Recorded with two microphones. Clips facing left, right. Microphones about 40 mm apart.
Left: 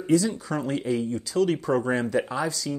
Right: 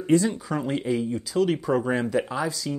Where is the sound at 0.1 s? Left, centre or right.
Right.